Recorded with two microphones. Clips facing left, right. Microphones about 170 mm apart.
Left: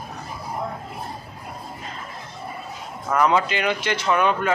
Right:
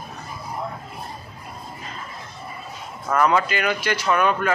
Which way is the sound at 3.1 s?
15° left (ahead or behind).